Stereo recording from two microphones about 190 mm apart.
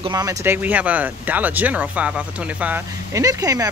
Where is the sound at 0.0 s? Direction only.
20° right (ahead or behind).